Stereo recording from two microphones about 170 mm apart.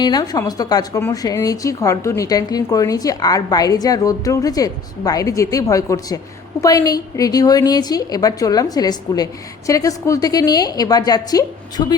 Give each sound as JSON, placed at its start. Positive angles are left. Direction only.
{"t": 0.0, "sound": "a woman's voice", "side_deg": 25}